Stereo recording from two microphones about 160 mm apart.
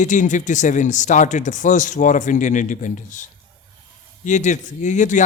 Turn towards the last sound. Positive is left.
turn(degrees=50)  # may be behind; listen again after turning